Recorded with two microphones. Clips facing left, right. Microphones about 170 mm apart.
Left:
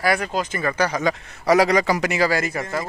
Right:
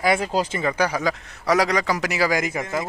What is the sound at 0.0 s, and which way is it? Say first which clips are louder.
Speech: right 1 dB; 25° right (ahead or behind).